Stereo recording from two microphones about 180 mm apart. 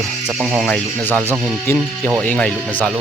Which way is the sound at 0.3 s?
5° right (ahead or behind).